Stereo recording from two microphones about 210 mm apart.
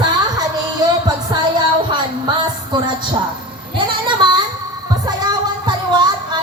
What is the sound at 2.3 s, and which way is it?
Music, 20° right (ahead or behind).